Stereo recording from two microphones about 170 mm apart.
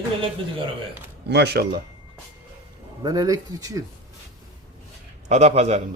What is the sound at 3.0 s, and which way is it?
Speech, 20° right (ahead or behind).